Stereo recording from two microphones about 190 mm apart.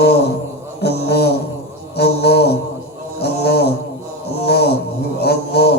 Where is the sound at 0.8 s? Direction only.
60° left (ahead or behind).